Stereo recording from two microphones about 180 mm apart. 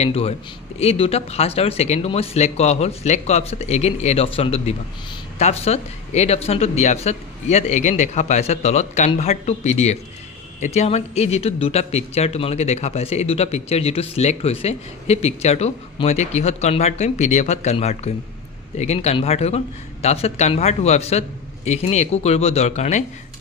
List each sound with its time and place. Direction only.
0.0 s speech: 35° left (ahead or behind)